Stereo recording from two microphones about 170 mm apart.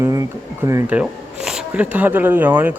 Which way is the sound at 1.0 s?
5° right (ahead or behind).